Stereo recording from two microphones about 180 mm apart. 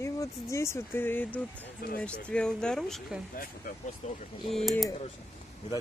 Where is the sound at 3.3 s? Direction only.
50° left (ahead or behind).